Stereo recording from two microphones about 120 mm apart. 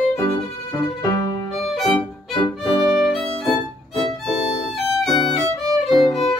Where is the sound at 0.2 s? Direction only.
30° left (ahead or behind).